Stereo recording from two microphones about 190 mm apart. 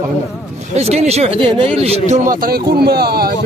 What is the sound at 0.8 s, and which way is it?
Speech, 35° right (ahead or behind).